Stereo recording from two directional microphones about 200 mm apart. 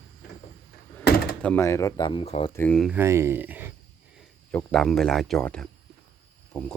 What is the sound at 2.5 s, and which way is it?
Speech, 5° left (ahead or behind).